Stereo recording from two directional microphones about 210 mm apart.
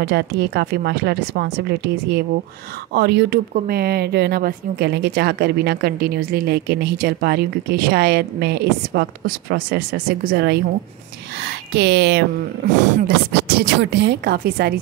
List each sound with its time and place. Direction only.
0.0 s a woman's voice: 50° right (ahead or behind)
12.6 s speech: 35° right (ahead or behind)
13.3 s a woman's voice: 50° right (ahead or behind)